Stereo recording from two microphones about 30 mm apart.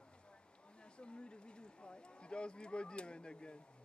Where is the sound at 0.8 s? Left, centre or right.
Left.